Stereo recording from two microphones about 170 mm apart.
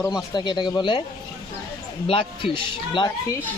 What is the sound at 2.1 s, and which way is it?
Speech, 30° left (ahead or behind).